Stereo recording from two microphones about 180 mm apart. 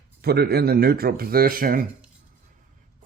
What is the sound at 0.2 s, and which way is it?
A man's voice, 60° right (ahead or behind).